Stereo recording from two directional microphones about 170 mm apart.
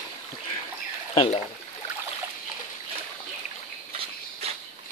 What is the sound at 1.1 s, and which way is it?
Speech, 35° left (ahead or behind).